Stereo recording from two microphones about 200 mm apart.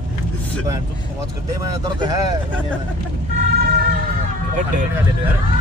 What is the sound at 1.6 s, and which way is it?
Speech, 20° right (ahead or behind).